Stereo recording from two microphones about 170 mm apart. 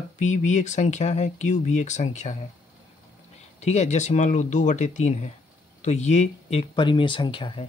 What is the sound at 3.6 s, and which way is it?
Speech, 40° left (ahead or behind).